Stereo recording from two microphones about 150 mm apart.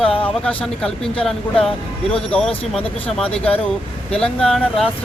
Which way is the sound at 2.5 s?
40° left (ahead or behind).